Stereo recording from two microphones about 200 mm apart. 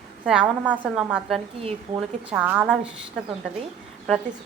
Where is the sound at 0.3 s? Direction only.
5° right (ahead or behind).